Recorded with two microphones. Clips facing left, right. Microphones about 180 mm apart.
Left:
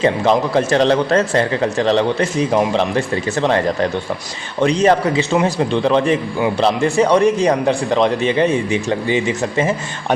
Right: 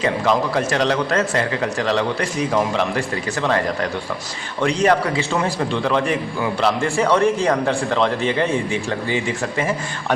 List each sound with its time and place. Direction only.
0.0 s a man's voice: 25° left (ahead or behind)
4.6 s a man's voice: 20° left (ahead or behind)